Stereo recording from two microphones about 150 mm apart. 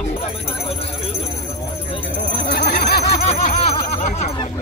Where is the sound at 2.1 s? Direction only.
90° left.